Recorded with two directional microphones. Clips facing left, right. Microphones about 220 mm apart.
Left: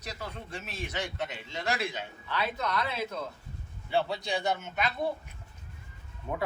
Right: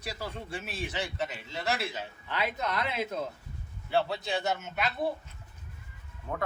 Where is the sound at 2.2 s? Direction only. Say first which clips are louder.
Even; 20° right (ahead or behind).